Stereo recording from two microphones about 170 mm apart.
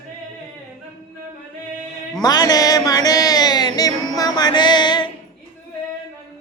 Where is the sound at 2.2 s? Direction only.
25° left (ahead or behind).